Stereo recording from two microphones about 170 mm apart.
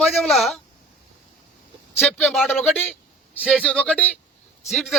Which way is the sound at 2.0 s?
Centre (ahead or behind).